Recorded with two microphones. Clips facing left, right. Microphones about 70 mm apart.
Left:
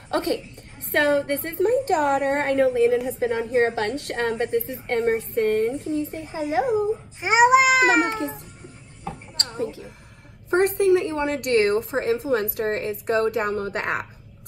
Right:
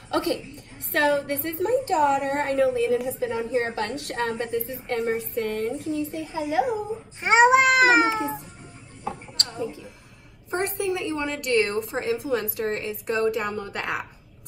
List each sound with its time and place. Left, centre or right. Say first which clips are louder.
0.1 s a woman's voice: left 1 dB; left
3.6 s a woman's voice: left 5 dB; left
6.6 s a child's voice: left 4 dB; centre
9.6 s a woman's voice: left 3 dB; left
10.5 s a woman's voice: left 8 dB; left